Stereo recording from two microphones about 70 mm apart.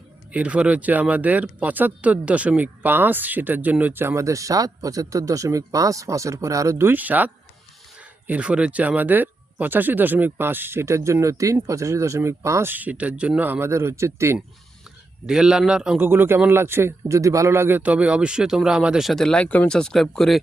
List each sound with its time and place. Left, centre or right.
0.3 s speech: centre; by 6.7 s right
6.7 s speech: right
8.3 s speech: centre; by 12.7 s right
12.7 s speech: right
13.5 s speech: right
15.3 s a man's voice: centre
16.0 s speech: right
17.2 s a man's voice: right; by 19.0 s centre
19.0 s speech: centre
19.5 s speech: left
19.7 s speech: centre